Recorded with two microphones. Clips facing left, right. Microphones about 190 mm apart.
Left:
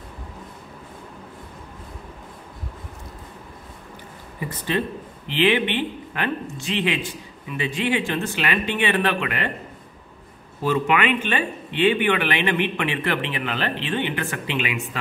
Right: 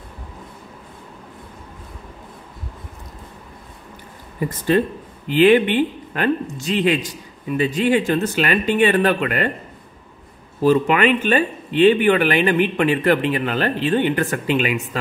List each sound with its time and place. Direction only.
4.4 s a man's voice: 45° right (ahead or behind)
10.6 s speech: 40° right (ahead or behind)